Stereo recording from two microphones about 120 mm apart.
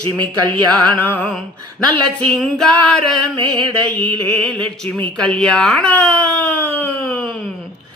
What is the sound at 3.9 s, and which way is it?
Speech, 10° left (ahead or behind).